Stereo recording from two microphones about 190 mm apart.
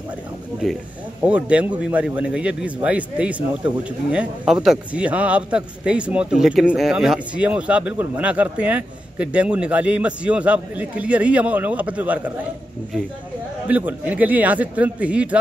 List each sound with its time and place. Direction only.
1.2 s speech: 5° right (ahead or behind)
13.7 s speech: 10° right (ahead or behind)